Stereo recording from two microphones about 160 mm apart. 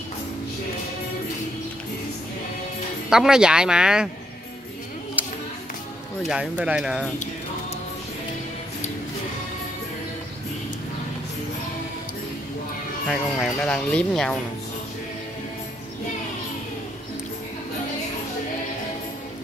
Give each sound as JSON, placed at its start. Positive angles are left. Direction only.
{"t": 3.1, "sound": "speech", "side_deg": -5}
{"t": 5.2, "sound": "a sound", "side_deg": -10}
{"t": 6.2, "sound": "speech", "side_deg": -5}
{"t": 13.1, "sound": "speech", "side_deg": 0}